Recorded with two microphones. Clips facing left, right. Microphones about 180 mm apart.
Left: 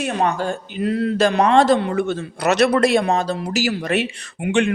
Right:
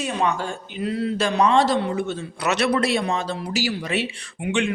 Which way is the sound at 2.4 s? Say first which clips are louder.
Left 5 dB; 45° left (ahead or behind).